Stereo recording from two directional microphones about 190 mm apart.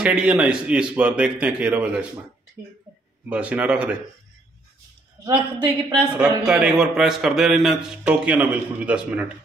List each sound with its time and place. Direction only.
0.0 s speech: 5° right (ahead or behind)
3.3 s speech: 5° right (ahead or behind)
5.2 s a woman's voice: 20° right (ahead or behind)
6.1 s a man's voice: 5° right (ahead or behind)